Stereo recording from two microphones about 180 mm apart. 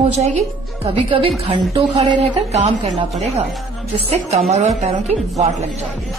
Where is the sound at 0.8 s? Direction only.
30° right (ahead or behind).